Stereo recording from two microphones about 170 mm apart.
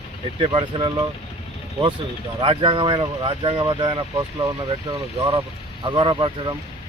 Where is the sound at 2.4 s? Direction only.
30° right (ahead or behind).